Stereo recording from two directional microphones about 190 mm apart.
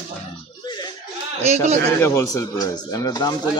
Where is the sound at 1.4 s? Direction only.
35° right (ahead or behind).